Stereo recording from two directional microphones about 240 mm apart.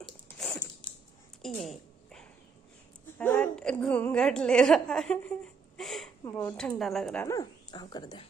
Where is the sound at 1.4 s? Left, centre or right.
Centre.